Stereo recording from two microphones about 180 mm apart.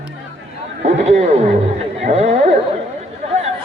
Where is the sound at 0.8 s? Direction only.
40° right (ahead or behind).